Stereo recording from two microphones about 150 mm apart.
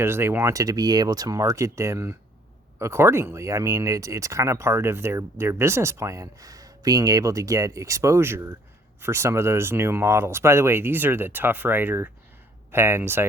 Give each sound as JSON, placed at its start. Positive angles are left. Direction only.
{"t": 0.0, "sound": "speech", "side_deg": -15}